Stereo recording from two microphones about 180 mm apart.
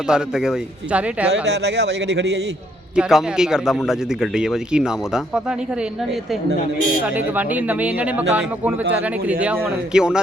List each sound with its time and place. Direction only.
0.1 s a man's voice: 5° right (ahead or behind)
1.3 s a man's voice: 70° right (ahead or behind)
2.9 s a man's voice: 5° right (ahead or behind)
7.1 s a man's voice: 10° right (ahead or behind)